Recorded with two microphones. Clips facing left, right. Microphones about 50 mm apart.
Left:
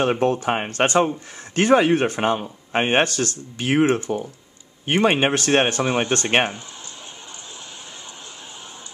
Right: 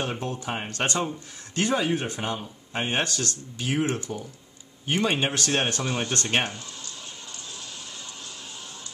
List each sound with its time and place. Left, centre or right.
0.0 s speech: left
0.7 s speech: left